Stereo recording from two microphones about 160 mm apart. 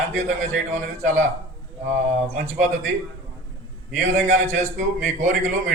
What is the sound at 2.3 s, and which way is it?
Speech, 50° right (ahead or behind).